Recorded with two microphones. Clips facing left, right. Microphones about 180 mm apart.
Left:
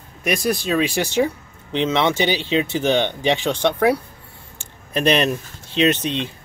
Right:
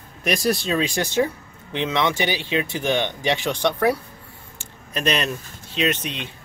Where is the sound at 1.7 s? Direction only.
25° left (ahead or behind); by 3.9 s 5° left (ahead or behind).